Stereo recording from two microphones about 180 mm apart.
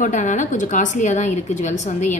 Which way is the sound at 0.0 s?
45° left (ahead or behind).